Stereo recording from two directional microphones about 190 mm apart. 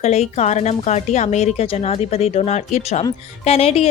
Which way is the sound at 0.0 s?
35° left (ahead or behind).